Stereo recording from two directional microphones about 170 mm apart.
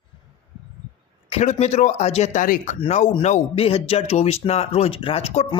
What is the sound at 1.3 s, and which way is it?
Speech, 40° left (ahead or behind).